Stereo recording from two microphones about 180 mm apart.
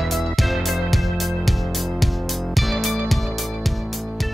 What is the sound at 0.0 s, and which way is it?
Music, centre (ahead or behind).